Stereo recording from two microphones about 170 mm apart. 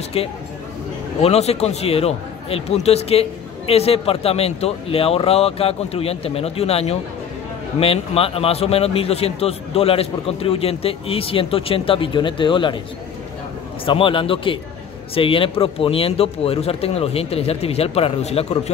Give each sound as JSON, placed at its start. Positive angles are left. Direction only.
{"t": 0.2, "sound": "a man's voice", "side_deg": 35}
{"t": 13.8, "sound": "a man's voice", "side_deg": 30}